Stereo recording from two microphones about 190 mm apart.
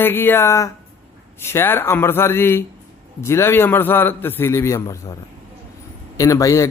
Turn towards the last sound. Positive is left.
turn(degrees=15)  # may be behind; listen again after turning